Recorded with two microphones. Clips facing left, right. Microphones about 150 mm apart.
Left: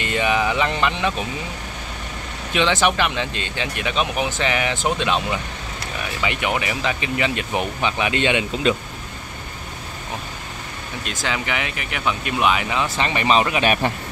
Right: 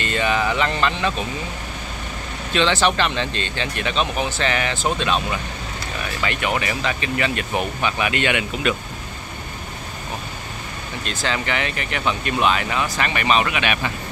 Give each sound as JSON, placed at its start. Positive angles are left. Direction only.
{"t": 0.0, "sound": "speech", "side_deg": 15}
{"t": 2.5, "sound": "speech", "side_deg": 15}
{"t": 11.1, "sound": "speech", "side_deg": 10}
{"t": 12.9, "sound": "speech", "side_deg": 25}